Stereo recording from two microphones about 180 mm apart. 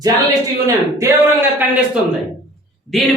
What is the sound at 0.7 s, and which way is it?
Speech, 20° right (ahead or behind).